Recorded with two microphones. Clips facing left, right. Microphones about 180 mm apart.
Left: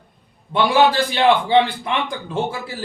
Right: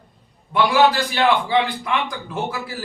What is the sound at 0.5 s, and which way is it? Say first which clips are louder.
A man's voice: left 1 dB; 30° left (ahead or behind).